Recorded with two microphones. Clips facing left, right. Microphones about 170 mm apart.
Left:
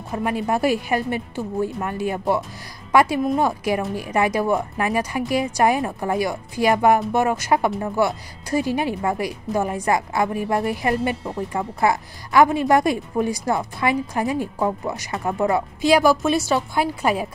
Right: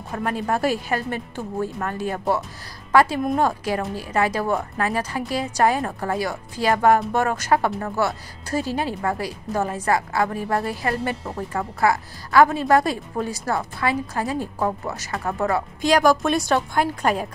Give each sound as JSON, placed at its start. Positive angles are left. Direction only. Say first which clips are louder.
{"t": 0.1, "sound": "speech", "louder": "left 2 dB", "side_deg": 10}